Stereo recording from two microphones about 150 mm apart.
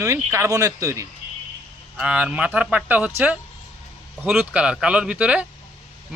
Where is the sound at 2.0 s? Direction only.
5° right (ahead or behind).